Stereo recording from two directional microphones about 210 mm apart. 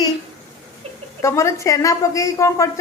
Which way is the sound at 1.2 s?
15° left (ahead or behind).